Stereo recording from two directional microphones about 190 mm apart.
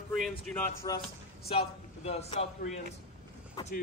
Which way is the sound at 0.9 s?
20° left (ahead or behind).